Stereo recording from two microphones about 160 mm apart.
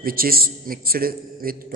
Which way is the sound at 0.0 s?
65° right (ahead or behind).